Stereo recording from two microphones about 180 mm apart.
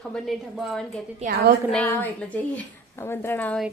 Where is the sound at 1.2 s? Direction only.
50° right (ahead or behind).